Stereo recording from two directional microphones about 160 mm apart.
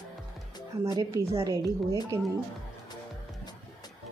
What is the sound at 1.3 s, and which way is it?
Speech, 20° right (ahead or behind).